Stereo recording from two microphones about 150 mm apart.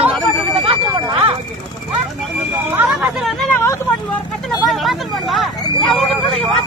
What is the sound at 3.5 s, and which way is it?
Vehicle, 20° left (ahead or behind).